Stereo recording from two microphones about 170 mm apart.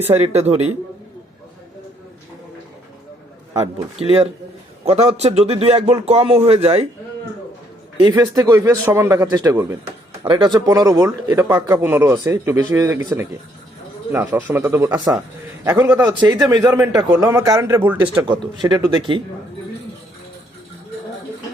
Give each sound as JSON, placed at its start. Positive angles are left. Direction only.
{"t": 0.0, "sound": "a man's voice", "side_deg": -40}
{"t": 4.9, "sound": "a man's voice", "side_deg": -40}
{"t": 8.1, "sound": "speech", "side_deg": -20}
{"t": 16.1, "sound": "speech", "side_deg": -25}
{"t": 18.6, "sound": "speech", "side_deg": -25}